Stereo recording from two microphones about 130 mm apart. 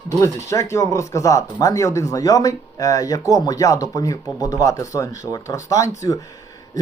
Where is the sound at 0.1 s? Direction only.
25° left (ahead or behind).